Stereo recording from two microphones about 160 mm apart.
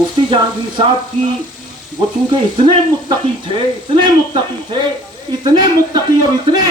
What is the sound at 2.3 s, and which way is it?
A man's voice, 30° right (ahead or behind).